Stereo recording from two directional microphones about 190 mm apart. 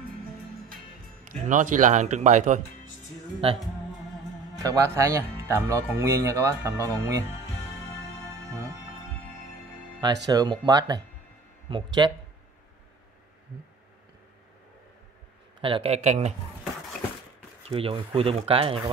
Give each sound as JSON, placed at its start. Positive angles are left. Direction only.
{"t": 1.3, "sound": "speech", "side_deg": -40}
{"t": 3.4, "sound": "speech", "side_deg": -30}
{"t": 4.6, "sound": "speech", "side_deg": -15}
{"t": 10.2, "sound": "speech", "side_deg": -20}
{"t": 15.6, "sound": "speech", "side_deg": -30}
{"t": 17.6, "sound": "speech", "side_deg": -30}